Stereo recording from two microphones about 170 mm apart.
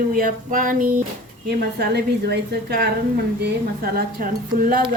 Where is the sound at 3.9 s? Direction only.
55° right (ahead or behind).